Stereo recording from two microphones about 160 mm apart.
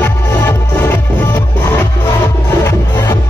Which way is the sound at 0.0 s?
10° left (ahead or behind).